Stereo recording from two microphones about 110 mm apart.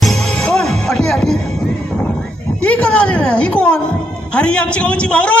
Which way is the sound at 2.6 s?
10° left (ahead or behind).